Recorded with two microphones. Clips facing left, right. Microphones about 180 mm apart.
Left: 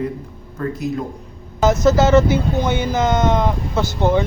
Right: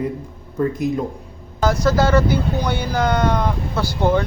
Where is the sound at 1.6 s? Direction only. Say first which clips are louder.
Left 3 dB; 25° left (ahead or behind).